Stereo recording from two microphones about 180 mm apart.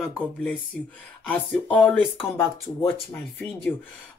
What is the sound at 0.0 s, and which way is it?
Speech, 5° left (ahead or behind).